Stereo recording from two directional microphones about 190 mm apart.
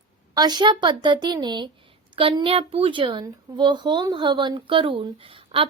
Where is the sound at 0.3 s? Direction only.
20° right (ahead or behind).